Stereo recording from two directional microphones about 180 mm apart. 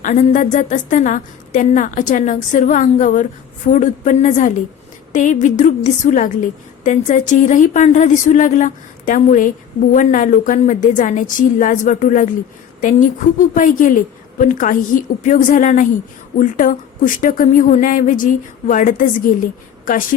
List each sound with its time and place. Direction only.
0.0 s a woman's voice: 45° left (ahead or behind)